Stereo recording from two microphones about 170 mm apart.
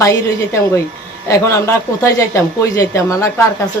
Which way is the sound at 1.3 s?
15° left (ahead or behind).